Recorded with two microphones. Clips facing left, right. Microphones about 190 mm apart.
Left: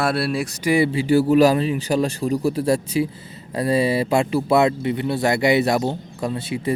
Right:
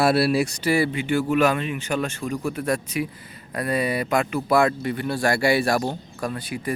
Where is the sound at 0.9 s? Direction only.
35° left (ahead or behind).